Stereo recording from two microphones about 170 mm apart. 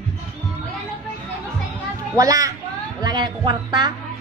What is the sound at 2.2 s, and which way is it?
A child's voice, 20° right (ahead or behind).